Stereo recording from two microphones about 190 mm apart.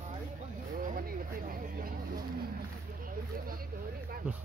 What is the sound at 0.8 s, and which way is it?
Vehicle, 50° right (ahead or behind).